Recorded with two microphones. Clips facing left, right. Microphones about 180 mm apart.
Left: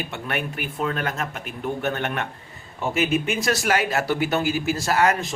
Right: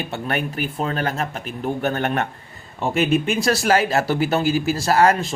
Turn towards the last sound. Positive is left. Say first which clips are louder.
# right 4 dB
turn(degrees=-35)  # may be behind; listen again after turning